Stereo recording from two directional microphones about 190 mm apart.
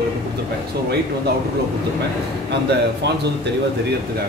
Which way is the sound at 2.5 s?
65° right (ahead or behind).